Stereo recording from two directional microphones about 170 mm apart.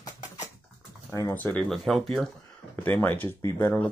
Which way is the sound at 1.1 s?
10° left (ahead or behind).